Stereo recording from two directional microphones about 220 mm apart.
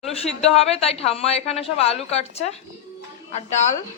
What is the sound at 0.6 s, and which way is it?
A woman's voice, 25° left (ahead or behind).